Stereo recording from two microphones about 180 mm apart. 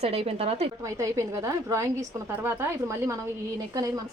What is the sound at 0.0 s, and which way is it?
Speech, 35° right (ahead or behind).